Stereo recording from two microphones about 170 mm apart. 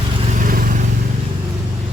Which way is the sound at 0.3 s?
55° right (ahead or behind).